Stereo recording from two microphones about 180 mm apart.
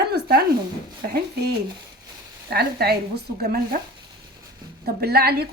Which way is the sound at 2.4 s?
60° right (ahead or behind).